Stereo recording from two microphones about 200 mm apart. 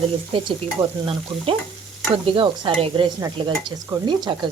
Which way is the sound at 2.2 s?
25° right (ahead or behind).